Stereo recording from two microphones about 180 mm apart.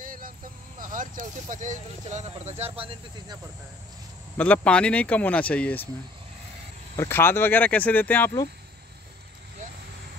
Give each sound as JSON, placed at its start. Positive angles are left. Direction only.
{"t": 0.0, "sound": "a sound", "side_deg": -50}
{"t": 0.7, "sound": "speech", "side_deg": -50}
{"t": 4.4, "sound": "speech", "side_deg": 5}
{"t": 7.0, "sound": "speech", "side_deg": 10}